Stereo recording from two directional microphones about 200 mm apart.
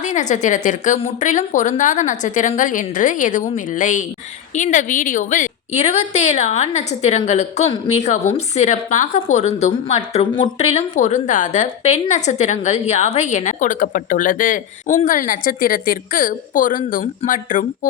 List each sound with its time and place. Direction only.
0.0 s a woman's voice: 35° left (ahead or behind)